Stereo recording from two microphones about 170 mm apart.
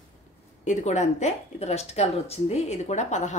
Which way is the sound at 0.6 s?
45° left (ahead or behind).